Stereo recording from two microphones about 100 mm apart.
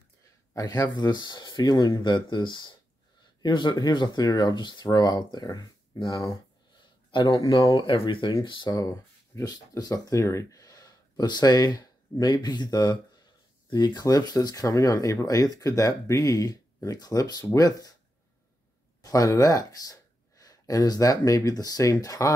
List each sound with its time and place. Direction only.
0.6 s speech: 40° left (ahead or behind)
7.2 s speech: 35° left (ahead or behind)
7.8 s speech: 60° left (ahead or behind); by 17.9 s 35° left (ahead or behind)
19.0 s speech: 35° left (ahead or behind)